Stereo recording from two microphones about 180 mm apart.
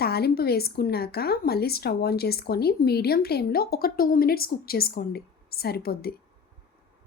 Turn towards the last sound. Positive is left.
turn(degrees=55)  # may be behind; listen again after turning